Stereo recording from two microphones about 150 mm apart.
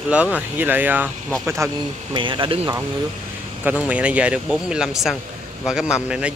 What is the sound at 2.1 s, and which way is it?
Speech, 30° right (ahead or behind).